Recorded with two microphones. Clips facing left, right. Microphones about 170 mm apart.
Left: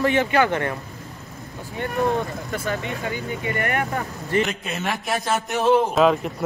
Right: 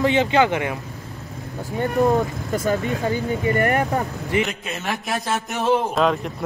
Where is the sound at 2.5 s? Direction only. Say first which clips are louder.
Right 6 dB; 40° right (ahead or behind).